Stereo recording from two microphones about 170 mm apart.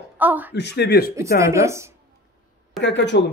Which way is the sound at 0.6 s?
75° left (ahead or behind).